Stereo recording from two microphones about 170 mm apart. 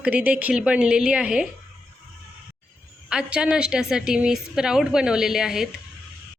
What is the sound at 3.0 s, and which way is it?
A woman's voice, 5° right (ahead or behind).